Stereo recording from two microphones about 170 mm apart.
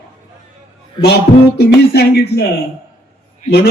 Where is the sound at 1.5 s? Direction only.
70° left (ahead or behind).